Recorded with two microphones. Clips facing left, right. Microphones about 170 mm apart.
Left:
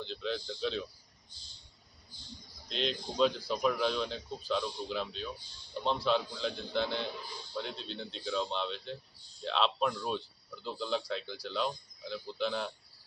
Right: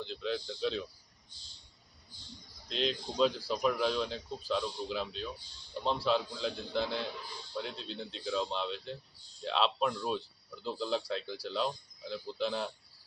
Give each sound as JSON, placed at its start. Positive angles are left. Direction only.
{"t": 0.0, "sound": "speech", "side_deg": -5}
{"t": 2.6, "sound": "speech", "side_deg": 0}